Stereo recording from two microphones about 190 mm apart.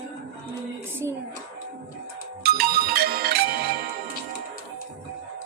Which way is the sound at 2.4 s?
55° right (ahead or behind).